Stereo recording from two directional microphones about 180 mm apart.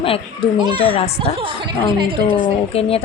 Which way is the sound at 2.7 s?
35° left (ahead or behind).